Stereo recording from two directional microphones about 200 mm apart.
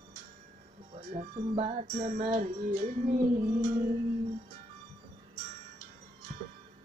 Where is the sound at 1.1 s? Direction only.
35° right (ahead or behind).